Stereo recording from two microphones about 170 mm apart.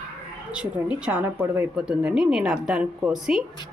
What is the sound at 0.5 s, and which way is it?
Speech, 5° right (ahead or behind).